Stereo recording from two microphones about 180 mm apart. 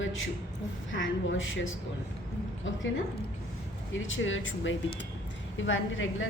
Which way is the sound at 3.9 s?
90° left.